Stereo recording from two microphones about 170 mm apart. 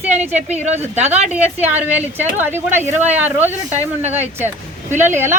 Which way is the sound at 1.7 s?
10° right (ahead or behind).